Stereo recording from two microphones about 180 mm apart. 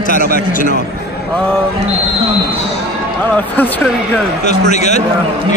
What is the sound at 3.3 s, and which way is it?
Speech, 10° left (ahead or behind).